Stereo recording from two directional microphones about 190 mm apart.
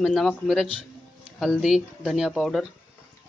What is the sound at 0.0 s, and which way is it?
Speech, centre (ahead or behind).